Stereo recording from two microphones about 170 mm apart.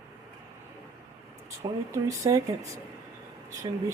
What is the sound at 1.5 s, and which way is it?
Speech, 20° right (ahead or behind).